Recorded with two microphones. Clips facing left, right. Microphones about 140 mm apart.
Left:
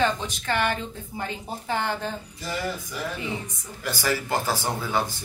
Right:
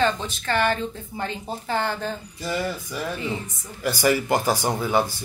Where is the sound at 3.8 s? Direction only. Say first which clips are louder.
Right 6 dB; 15° right (ahead or behind).